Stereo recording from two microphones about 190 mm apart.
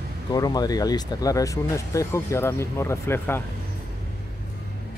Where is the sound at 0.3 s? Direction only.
20° left (ahead or behind).